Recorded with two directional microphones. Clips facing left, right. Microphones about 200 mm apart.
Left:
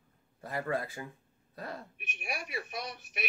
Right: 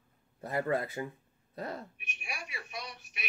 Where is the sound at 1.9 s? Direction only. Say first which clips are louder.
Left 5 dB; 55° left (ahead or behind).